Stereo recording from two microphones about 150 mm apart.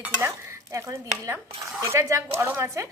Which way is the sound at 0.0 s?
15° right (ahead or behind).